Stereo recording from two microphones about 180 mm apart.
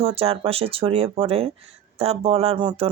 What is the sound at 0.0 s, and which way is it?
Speech, 35° right (ahead or behind).